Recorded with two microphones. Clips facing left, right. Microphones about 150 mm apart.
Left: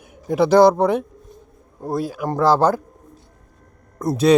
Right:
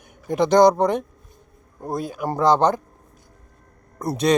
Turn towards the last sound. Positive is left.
turn(degrees=0)  # may be behind; listen again after turning